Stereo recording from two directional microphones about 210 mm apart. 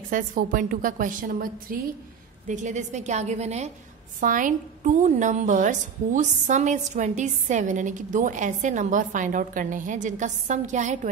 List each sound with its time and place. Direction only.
0.1 s a woman's voice: 40° right (ahead or behind)